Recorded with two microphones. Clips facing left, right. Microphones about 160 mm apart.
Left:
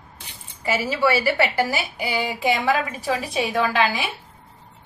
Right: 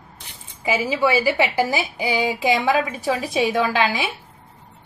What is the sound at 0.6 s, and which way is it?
A woman's voice, 15° right (ahead or behind).